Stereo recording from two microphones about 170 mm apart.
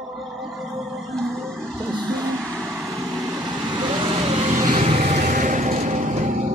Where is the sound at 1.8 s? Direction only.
25° right (ahead or behind).